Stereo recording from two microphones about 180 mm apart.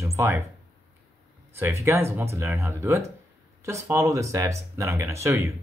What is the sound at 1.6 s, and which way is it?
Speech, 15° right (ahead or behind).